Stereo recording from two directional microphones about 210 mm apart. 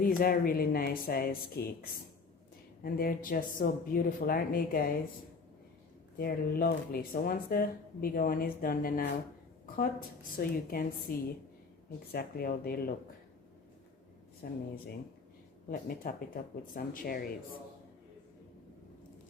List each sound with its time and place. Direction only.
0.0 s speech: 45° left (ahead or behind)
2.8 s speech: 45° left (ahead or behind)
6.1 s speech: 45° left (ahead or behind)
12.1 s speech: 45° left (ahead or behind)
14.4 s speech: 45° left (ahead or behind)
15.7 s speech: 40° left (ahead or behind)